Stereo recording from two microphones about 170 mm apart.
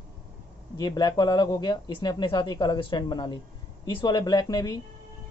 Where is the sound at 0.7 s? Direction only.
25° left (ahead or behind).